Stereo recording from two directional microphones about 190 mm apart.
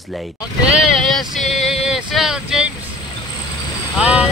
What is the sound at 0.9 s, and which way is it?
Speech, centre (ahead or behind).